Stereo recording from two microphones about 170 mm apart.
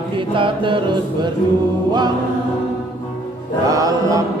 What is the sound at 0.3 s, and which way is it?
Mantra, 30° right (ahead or behind).